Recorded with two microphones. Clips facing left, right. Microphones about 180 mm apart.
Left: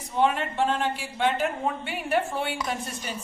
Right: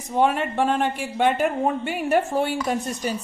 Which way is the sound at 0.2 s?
50° right (ahead or behind).